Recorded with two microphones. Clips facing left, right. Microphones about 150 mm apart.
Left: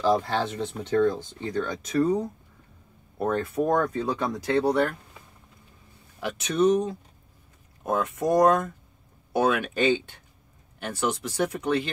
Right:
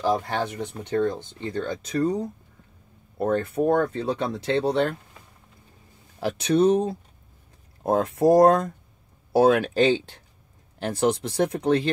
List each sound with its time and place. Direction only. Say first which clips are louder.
0.0 s speech: left 1 dB; 15° right (ahead or behind)
1.4 s speech: even; 25° right (ahead or behind)
3.2 s speech: right 2 dB; 30° right (ahead or behind)
6.1 s speech: right 5 dB; 35° right (ahead or behind)